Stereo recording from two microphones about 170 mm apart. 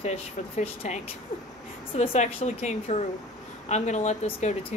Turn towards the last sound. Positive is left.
turn(degrees=40)  # may be behind; listen again after turning